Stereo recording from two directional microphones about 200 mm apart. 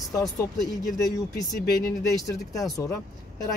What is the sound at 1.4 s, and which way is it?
Speech, 15° left (ahead or behind).